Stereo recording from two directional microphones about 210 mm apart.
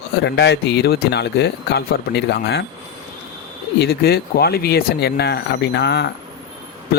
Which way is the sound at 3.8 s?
50° left (ahead or behind).